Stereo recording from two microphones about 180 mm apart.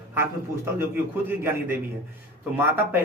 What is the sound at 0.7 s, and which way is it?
A man's voice, 10° right (ahead or behind).